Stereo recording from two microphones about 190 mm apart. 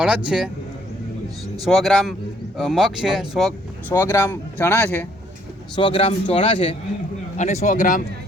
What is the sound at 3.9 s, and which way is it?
Speech, 15° left (ahead or behind).